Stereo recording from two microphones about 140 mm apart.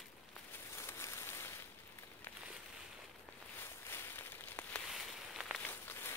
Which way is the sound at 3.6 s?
15° left (ahead or behind).